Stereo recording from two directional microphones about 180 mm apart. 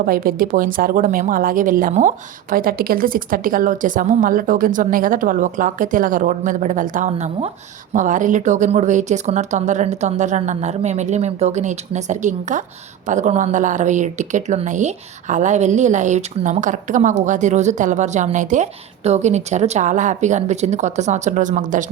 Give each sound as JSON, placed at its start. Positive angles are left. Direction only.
{"t": 0.0, "sound": "speech", "side_deg": -50}